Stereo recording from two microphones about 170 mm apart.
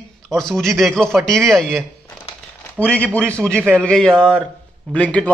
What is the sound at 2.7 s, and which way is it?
Speech, 10° right (ahead or behind).